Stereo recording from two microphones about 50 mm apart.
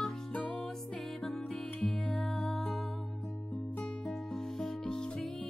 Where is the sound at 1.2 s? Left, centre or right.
Centre.